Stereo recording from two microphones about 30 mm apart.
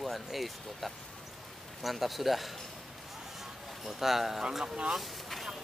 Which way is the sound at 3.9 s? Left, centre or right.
Centre.